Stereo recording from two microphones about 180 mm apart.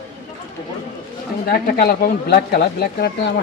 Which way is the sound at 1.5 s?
55° left (ahead or behind).